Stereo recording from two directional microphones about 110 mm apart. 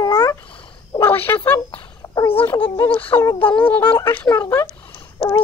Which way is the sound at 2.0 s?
15° left (ahead or behind).